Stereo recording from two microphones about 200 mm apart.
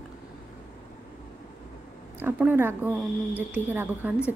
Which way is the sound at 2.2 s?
10° right (ahead or behind).